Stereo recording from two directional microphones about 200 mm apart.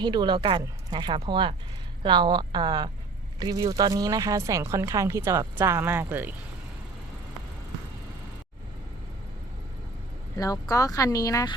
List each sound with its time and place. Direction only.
0.0 s speech: 20° right (ahead or behind)
10.3 s speech: 15° left (ahead or behind)